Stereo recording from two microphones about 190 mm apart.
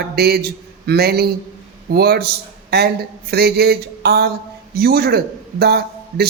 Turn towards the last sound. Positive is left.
turn(degrees=-55)  # may be behind; listen again after turning